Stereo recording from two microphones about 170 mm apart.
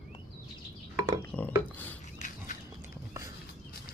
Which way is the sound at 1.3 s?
10° left (ahead or behind).